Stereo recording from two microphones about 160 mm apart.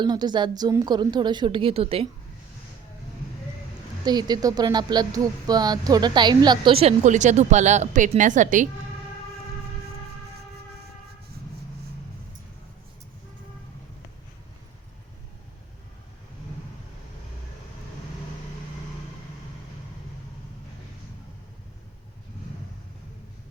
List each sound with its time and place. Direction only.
0.0 s speech: 25° right (ahead or behind)
4.0 s speech: 25° right (ahead or behind)
7.0 s a woman's voice: 50° right (ahead or behind)